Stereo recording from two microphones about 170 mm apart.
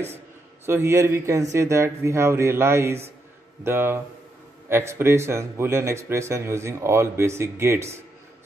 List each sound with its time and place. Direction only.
0.7 s speech: 15° right (ahead or behind)